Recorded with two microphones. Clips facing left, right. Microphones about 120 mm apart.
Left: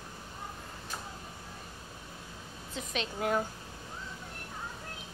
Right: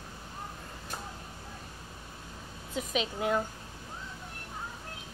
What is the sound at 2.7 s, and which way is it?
Speech, 5° right (ahead or behind).